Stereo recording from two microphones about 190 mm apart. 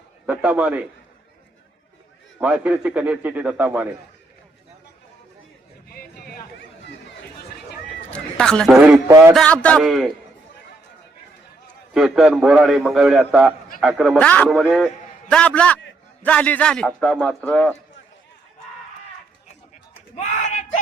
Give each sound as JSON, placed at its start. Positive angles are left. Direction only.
{"t": 0.3, "sound": "a man's voice", "side_deg": -5}
{"t": 2.4, "sound": "a man's voice", "side_deg": -5}
{"t": 5.9, "sound": "a sound", "side_deg": 55}
{"t": 8.1, "sound": "a man's voice", "side_deg": 5}
{"t": 9.0, "sound": "a man's voice", "side_deg": -15}
{"t": 9.3, "sound": "a man's voice", "side_deg": 5}
{"t": 11.9, "sound": "a man's voice", "side_deg": 0}